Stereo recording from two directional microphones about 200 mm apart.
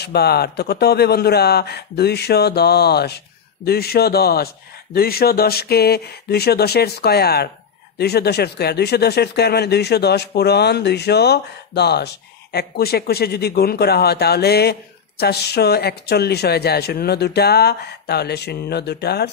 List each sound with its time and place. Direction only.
0.0 s speech: 55° left (ahead or behind)